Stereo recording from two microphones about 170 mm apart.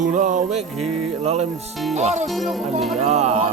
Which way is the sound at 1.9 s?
40° right (ahead or behind).